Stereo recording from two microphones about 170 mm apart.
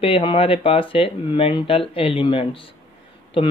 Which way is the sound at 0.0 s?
35° left (ahead or behind).